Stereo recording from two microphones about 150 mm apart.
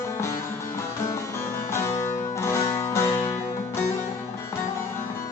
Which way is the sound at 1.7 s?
15° left (ahead or behind).